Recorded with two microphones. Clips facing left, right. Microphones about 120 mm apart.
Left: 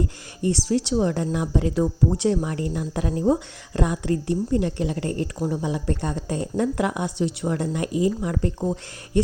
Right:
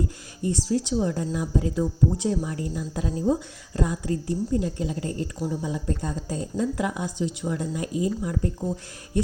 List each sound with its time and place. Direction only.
0.4 s speech: 75° left (ahead or behind)